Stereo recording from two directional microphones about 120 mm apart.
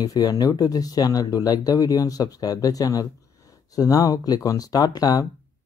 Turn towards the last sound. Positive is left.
turn(degrees=30)  # may be behind; listen again after turning